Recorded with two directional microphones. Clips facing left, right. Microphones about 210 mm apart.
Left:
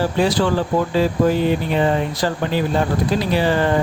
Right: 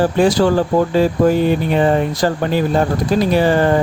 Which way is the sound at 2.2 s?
45° right (ahead or behind).